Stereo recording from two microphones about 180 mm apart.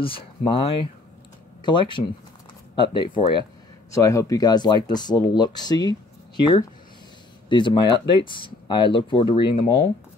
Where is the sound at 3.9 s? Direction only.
15° left (ahead or behind).